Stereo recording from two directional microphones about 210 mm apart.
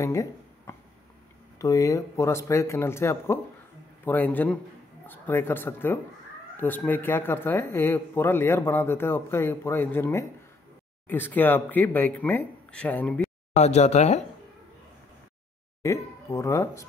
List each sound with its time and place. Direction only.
0.0 s a sound: 15° left (ahead or behind)
1.6 s speech: 15° left (ahead or behind)
13.6 s speech: 30° left (ahead or behind)
15.8 s speech: 15° left (ahead or behind)